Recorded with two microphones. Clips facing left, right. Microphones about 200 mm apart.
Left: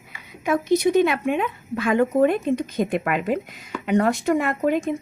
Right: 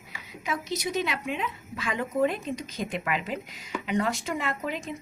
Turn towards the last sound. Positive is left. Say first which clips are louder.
# left 10 dB
turn(degrees=50)  # may be behind; listen again after turning